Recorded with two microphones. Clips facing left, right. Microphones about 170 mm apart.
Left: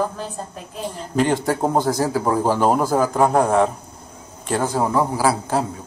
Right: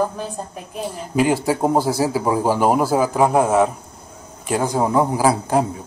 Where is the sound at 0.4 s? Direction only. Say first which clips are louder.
Right 2 dB; 15° right (ahead or behind).